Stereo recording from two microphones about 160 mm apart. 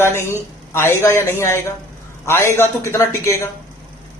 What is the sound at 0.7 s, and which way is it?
Speech, 15° left (ahead or behind).